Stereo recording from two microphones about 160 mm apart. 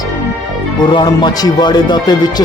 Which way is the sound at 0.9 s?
25° left (ahead or behind).